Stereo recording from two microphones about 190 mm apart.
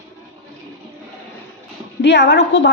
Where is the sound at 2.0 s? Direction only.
65° left (ahead or behind).